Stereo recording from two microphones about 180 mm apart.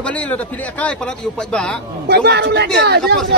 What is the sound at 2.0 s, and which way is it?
A man's voice, 65° right (ahead or behind).